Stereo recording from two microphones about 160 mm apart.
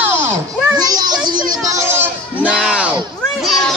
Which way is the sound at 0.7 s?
25° right (ahead or behind).